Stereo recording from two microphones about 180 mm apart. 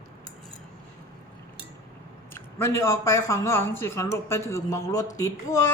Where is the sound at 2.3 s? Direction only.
15° left (ahead or behind).